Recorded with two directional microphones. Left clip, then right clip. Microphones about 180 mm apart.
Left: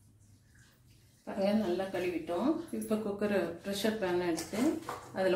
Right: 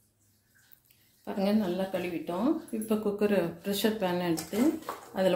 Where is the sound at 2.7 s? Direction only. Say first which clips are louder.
Right 4 dB; 55° right (ahead or behind).